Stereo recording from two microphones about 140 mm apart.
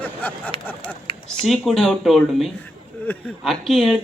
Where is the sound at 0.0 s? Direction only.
10° left (ahead or behind).